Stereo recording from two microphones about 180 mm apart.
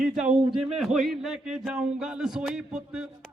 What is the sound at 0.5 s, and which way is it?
A man's voice, centre (ahead or behind).